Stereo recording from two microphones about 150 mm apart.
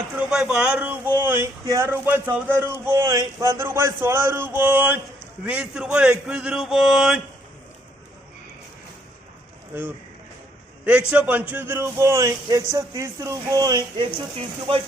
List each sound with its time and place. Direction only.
0.2 s a sound: 5° right (ahead or behind)
1.2 s a man's voice: 15° right (ahead or behind)
10.8 s speech: 10° right (ahead or behind); by 14.8 s 35° right (ahead or behind)